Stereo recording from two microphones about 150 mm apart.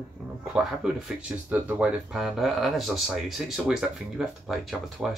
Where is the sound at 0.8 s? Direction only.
5° right (ahead or behind).